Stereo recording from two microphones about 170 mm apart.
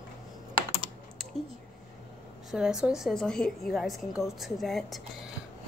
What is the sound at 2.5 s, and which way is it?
A woman's voice, 5° right (ahead or behind).